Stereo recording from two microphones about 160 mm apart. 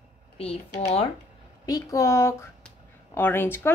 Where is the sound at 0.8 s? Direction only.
40° left (ahead or behind).